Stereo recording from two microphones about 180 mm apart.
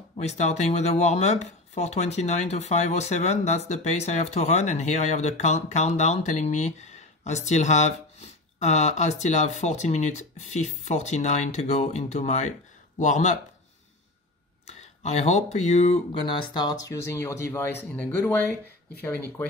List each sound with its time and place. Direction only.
0.2 s speech: 40° left (ahead or behind)
14.7 s speech: 40° left (ahead or behind); by 18.4 s 10° left (ahead or behind)